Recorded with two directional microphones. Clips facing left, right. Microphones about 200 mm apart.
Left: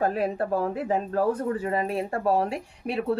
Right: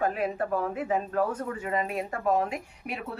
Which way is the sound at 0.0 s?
35° left (ahead or behind).